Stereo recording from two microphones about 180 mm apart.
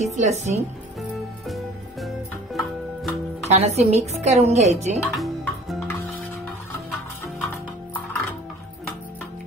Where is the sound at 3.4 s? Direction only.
35° right (ahead or behind).